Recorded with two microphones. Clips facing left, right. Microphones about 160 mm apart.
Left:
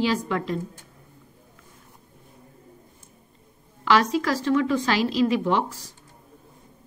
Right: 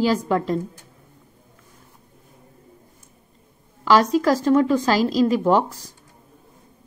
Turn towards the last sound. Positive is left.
turn(degrees=-40)  # may be behind; listen again after turning